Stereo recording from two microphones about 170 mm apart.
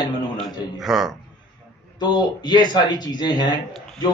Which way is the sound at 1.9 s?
25° left (ahead or behind).